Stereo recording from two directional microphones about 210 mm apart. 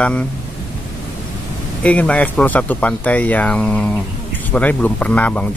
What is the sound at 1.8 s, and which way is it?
Speech, 5° left (ahead or behind).